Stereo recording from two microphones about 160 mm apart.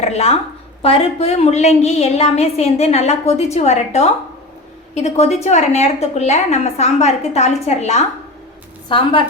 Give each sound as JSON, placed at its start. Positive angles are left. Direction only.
{"t": 0.0, "sound": "a woman's voice", "side_deg": 40}